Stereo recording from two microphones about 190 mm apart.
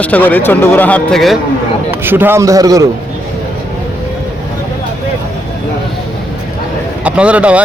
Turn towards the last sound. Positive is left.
turn(degrees=-5)  # may be behind; listen again after turning